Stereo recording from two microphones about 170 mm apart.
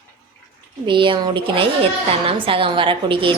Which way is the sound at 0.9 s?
30° right (ahead or behind).